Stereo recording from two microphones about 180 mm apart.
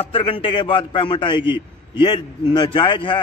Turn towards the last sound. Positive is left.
turn(degrees=25)  # may be behind; listen again after turning